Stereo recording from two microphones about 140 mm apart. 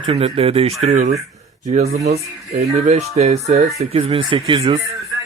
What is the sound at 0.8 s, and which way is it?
Speech, 60° right (ahead or behind).